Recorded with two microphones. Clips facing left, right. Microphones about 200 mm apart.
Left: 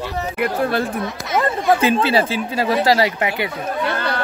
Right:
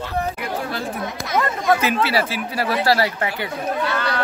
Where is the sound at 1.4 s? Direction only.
30° left (ahead or behind).